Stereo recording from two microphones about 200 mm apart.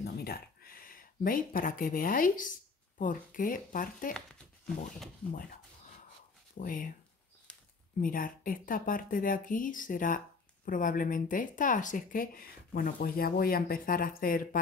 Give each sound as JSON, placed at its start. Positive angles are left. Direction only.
{"t": 0.0, "sound": "a sound", "side_deg": 50}
{"t": 3.0, "sound": "speech", "side_deg": 45}
{"t": 6.6, "sound": "speech", "side_deg": 45}
{"t": 8.0, "sound": "speech", "side_deg": 45}